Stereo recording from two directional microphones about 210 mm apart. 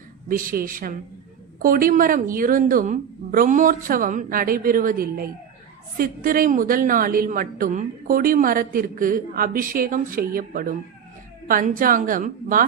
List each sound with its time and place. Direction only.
0.3 s a woman's voice: 40° right (ahead or behind)